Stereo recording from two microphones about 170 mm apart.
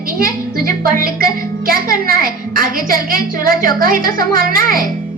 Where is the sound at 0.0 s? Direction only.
60° right (ahead or behind).